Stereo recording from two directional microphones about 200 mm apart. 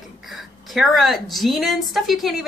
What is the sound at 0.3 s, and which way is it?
A woman's voice, centre (ahead or behind).